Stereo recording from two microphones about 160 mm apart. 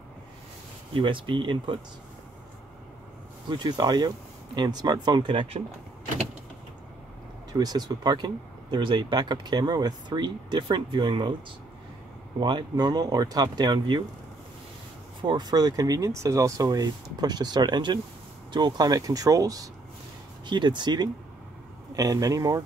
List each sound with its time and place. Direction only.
0.9 s speech: 30° right (ahead or behind)
3.4 s speech: 30° right (ahead or behind)
7.5 s speech: 25° right (ahead or behind)
12.4 s speech: 25° right (ahead or behind)
15.2 s speech: 25° right (ahead or behind)